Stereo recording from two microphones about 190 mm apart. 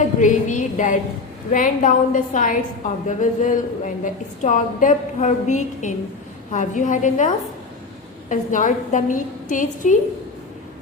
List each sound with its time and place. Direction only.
0.0 s a woman's voice: 40° left (ahead or behind)